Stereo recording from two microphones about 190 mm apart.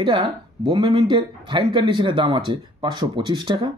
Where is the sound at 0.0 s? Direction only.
25° right (ahead or behind).